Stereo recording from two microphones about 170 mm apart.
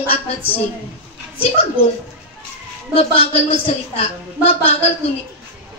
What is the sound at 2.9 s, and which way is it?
A woman's voice, 35° left (ahead or behind).